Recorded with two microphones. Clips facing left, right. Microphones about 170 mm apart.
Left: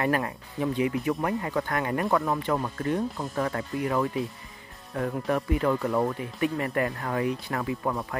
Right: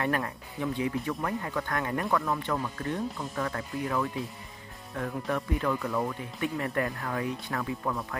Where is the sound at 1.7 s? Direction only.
5° left (ahead or behind).